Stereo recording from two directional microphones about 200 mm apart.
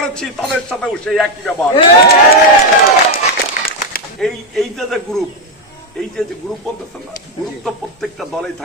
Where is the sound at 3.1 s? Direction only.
45° left (ahead or behind).